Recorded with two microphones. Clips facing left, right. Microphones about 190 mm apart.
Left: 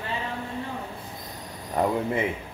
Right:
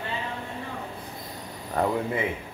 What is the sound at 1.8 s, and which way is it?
Speech, 15° left (ahead or behind).